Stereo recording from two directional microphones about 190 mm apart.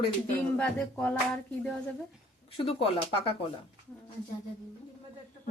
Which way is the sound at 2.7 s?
30° left (ahead or behind).